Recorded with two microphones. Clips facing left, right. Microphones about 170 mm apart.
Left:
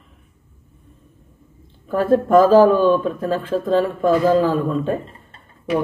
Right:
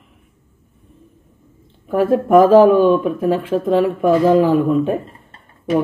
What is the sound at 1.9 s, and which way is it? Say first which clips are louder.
Speech: right 2 dB; 15° right (ahead or behind).